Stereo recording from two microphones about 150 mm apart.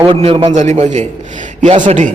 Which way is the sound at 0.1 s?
35° right (ahead or behind).